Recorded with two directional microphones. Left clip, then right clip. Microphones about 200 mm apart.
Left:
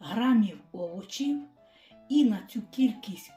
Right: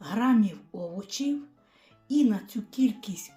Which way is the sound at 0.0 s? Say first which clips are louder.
Right 1 dB; 20° right (ahead or behind).